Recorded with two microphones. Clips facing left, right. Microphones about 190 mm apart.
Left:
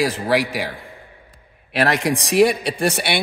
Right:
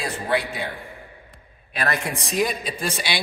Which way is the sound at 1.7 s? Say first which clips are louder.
Left 7 dB; 90° left.